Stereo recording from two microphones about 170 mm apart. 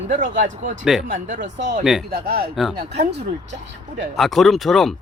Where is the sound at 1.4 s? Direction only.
90° right.